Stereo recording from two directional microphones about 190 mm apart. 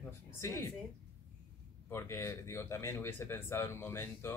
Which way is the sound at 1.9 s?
15° left (ahead or behind).